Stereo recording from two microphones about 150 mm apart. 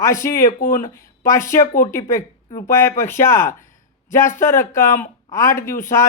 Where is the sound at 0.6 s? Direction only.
60° left (ahead or behind).